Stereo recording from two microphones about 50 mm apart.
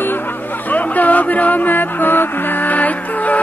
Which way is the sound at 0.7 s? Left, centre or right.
Left.